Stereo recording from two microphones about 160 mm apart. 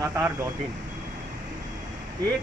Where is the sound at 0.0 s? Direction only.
20° right (ahead or behind).